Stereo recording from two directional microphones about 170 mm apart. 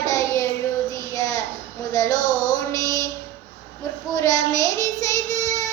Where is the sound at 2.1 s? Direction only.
45° left (ahead or behind).